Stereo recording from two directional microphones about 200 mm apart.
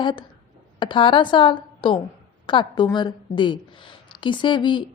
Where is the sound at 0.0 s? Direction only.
25° left (ahead or behind).